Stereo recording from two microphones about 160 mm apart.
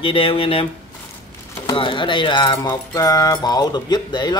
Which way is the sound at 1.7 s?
30° left (ahead or behind).